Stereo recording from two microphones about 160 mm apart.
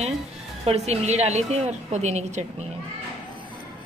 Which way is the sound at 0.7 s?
40° right (ahead or behind).